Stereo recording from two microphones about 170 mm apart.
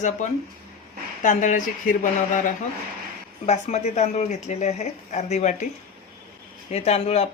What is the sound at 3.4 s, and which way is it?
Speech, 40° left (ahead or behind).